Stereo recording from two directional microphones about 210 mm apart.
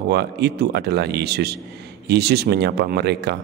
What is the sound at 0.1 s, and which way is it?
A man's voice, 50° right (ahead or behind).